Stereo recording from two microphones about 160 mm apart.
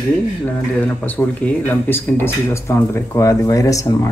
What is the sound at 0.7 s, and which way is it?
Speech, 10° left (ahead or behind).